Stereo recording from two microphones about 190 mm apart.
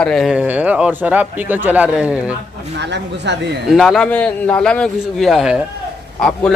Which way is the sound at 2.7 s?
65° right (ahead or behind).